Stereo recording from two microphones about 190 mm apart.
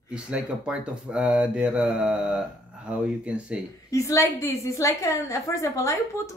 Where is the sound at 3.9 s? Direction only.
15° left (ahead or behind).